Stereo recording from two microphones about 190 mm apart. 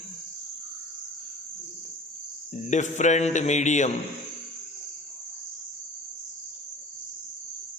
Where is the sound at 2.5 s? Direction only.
40° left (ahead or behind).